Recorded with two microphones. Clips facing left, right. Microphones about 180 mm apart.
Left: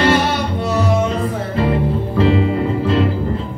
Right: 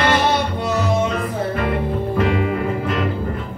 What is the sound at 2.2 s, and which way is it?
Music, 30° left (ahead or behind).